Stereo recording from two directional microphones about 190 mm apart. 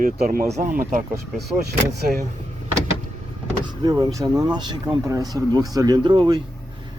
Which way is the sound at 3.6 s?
20° right (ahead or behind).